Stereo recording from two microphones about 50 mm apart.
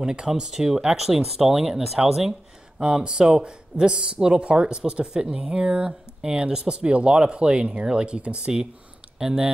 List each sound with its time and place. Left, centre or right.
0.0 s speech: centre
2.8 s speech: centre